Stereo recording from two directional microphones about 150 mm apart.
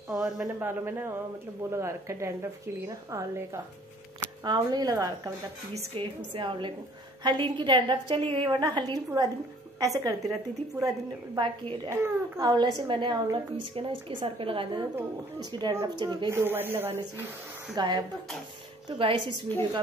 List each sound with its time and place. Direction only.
0.1 s speech: 15° right (ahead or behind)
5.9 s a woman's voice: 35° right (ahead or behind)
16.3 s speech: 15° right (ahead or behind)
17.7 s a woman's voice: 30° right (ahead or behind)